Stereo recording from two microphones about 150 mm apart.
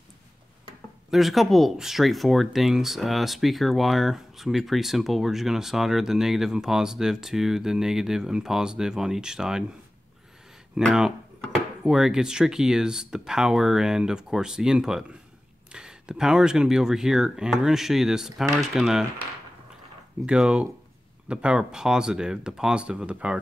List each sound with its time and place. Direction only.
1.1 s speech: centre (ahead or behind)
10.8 s speech: centre (ahead or behind)
20.2 s speech: 5° right (ahead or behind)